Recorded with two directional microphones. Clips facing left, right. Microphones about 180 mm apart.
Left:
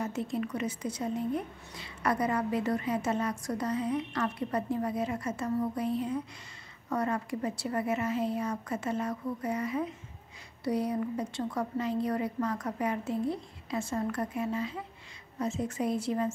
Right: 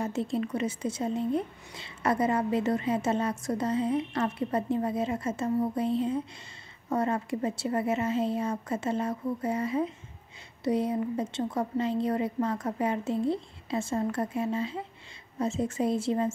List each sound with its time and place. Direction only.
0.0 s a woman's voice: 30° right (ahead or behind)